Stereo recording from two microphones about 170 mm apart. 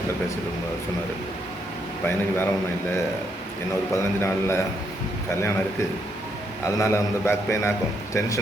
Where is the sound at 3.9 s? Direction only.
15° left (ahead or behind).